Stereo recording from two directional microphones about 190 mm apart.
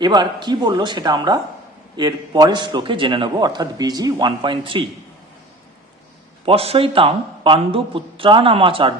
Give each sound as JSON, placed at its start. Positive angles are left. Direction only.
{"t": 0.0, "sound": "speech", "side_deg": -25}
{"t": 6.4, "sound": "speech", "side_deg": -30}